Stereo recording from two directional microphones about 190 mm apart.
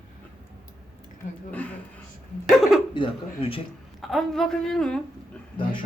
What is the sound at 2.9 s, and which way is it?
Speech, 25° left (ahead or behind).